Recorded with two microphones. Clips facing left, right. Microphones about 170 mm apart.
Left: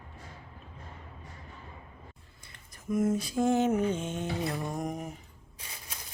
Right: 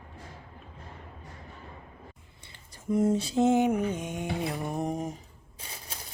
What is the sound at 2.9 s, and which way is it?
Mantra, 30° right (ahead or behind).